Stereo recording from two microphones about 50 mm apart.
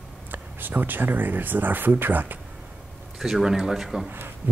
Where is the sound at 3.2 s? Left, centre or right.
Centre.